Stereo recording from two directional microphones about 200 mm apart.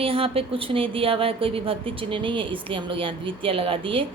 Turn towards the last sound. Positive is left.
turn(degrees=-25)  # may be behind; listen again after turning